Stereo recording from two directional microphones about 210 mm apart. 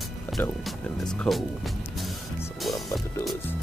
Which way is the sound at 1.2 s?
Centre (ahead or behind).